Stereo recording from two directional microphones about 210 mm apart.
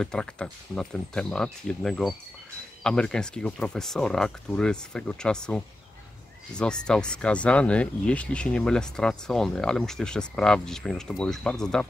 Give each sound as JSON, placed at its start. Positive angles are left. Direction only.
{"t": 0.0, "sound": "speech", "side_deg": 5}